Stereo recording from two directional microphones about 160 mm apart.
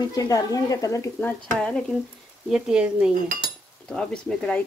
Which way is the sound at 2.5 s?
5° right (ahead or behind).